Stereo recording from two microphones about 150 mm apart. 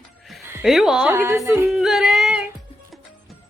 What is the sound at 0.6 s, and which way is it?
Speech, centre (ahead or behind).